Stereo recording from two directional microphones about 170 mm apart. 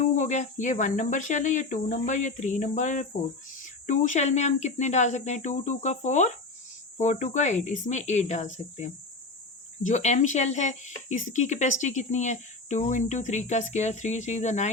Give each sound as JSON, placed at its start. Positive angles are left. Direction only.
{"t": 0.0, "sound": "speech", "side_deg": 45}